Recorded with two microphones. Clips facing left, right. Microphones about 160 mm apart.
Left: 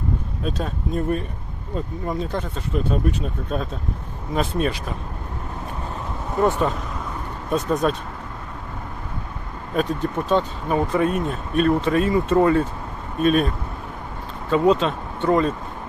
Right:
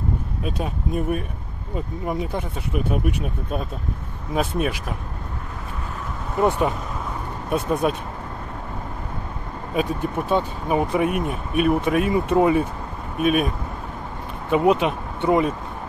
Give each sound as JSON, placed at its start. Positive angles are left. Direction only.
{"t": 0.6, "sound": "speech", "side_deg": -10}
{"t": 7.4, "sound": "speech", "side_deg": -10}
{"t": 9.8, "sound": "speech", "side_deg": -10}
{"t": 14.5, "sound": "speech", "side_deg": -15}